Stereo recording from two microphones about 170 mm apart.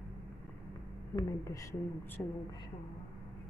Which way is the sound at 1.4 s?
20° left (ahead or behind).